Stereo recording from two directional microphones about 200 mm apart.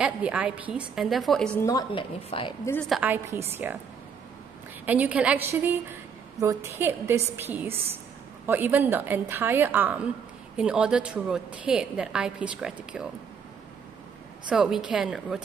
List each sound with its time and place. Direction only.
0.0 s a woman's voice: 5° right (ahead or behind); by 1.9 s 15° left (ahead or behind)
1.9 s a woman's voice: 25° left (ahead or behind)
2.9 s a woman's voice: 10° right (ahead or behind)
4.8 s a woman's voice: 10° right (ahead or behind)
14.5 s a woman's voice: 5° right (ahead or behind)